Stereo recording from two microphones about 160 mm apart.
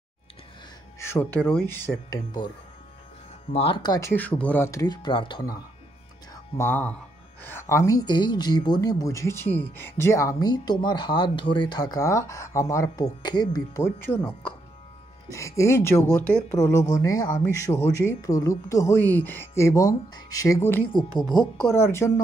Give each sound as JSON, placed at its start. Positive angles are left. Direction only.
{"t": 0.9, "sound": "speech", "side_deg": 15}
{"t": 3.5, "sound": "speech", "side_deg": 35}
{"t": 4.1, "sound": "speech", "side_deg": 10}
{"t": 6.6, "sound": "speech", "side_deg": 10}
{"t": 21.4, "sound": "speech", "side_deg": 10}